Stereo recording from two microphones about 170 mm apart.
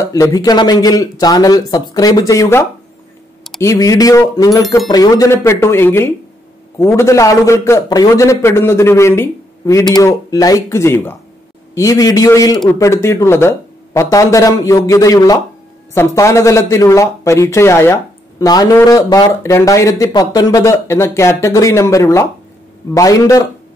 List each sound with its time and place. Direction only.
0.0 s speech: 20° left (ahead or behind)
3.6 s speech: 20° left (ahead or behind)